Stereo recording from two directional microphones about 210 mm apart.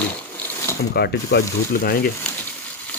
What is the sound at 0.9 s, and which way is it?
Speech, 50° left (ahead or behind).